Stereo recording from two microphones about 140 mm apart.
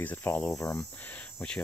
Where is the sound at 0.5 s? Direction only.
25° left (ahead or behind).